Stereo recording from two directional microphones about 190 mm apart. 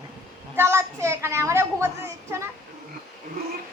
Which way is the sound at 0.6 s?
15° right (ahead or behind).